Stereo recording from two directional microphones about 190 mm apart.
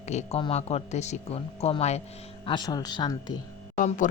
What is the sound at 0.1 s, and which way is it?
Speech, 35° left (ahead or behind).